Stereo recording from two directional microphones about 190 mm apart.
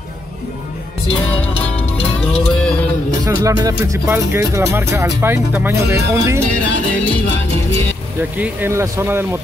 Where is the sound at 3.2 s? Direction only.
20° right (ahead or behind).